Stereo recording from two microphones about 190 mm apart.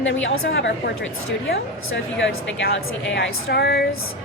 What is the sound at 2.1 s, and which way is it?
A woman's voice, 70° left (ahead or behind).